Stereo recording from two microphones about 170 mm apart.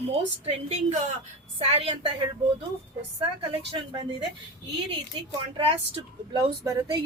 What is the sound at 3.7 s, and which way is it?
Speech, 30° right (ahead or behind).